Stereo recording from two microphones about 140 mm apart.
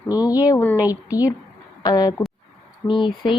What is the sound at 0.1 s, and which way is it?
Speech, 25° left (ahead or behind).